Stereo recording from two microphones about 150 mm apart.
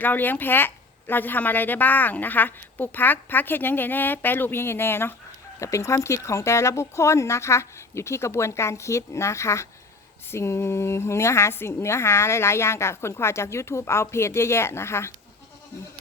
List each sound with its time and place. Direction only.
0.0 s a woman's voice: 10° left (ahead or behind)